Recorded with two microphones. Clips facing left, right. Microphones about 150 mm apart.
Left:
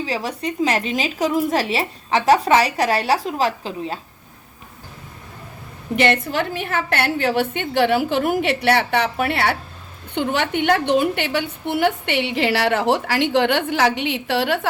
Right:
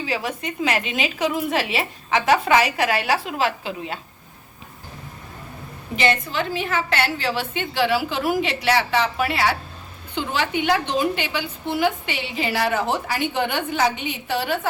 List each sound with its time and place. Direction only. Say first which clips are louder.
0.0 s a woman's voice: left 2 dB; 35° left (ahead or behind)
6.0 s a woman's voice: left 3 dB; 60° left (ahead or behind); by 14.7 s 85° left